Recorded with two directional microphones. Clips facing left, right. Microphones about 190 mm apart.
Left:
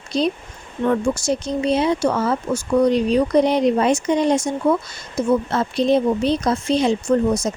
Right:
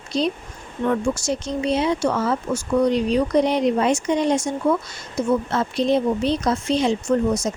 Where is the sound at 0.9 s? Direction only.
35° left (ahead or behind).